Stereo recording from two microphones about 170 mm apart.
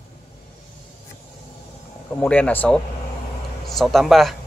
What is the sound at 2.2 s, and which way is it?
A man's voice, 10° left (ahead or behind).